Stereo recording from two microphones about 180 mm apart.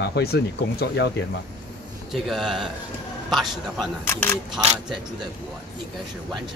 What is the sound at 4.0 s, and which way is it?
Speech, 10° left (ahead or behind).